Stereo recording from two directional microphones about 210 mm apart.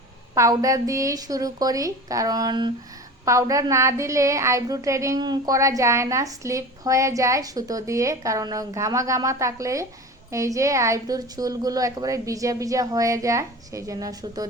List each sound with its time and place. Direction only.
0.3 s a woman's voice: 15° right (ahead or behind)